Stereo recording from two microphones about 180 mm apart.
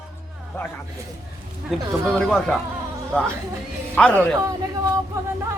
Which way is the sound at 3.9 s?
10° left (ahead or behind).